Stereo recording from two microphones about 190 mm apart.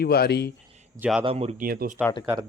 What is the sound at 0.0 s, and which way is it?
Speech, 55° left (ahead or behind).